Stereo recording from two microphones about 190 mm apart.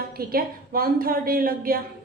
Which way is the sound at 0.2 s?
50° right (ahead or behind).